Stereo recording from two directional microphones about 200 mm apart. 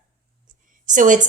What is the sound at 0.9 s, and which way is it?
Speech, 40° right (ahead or behind).